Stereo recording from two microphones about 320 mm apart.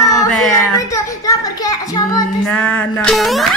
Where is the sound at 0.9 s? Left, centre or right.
Centre.